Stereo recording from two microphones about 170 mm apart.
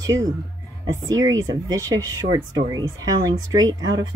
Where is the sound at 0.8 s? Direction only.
20° right (ahead or behind).